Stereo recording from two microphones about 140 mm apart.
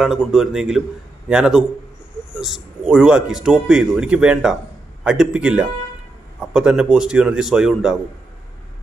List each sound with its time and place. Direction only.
0.0 s a man's voice: 5° right (ahead or behind)